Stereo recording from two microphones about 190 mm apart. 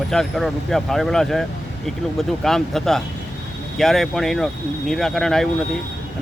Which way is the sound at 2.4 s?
Centre (ahead or behind).